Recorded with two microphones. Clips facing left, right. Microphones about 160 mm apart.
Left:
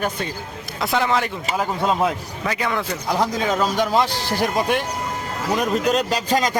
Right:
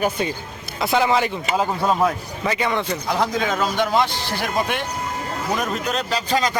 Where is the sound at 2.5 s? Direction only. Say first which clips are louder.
Right 2 dB; centre (ahead or behind).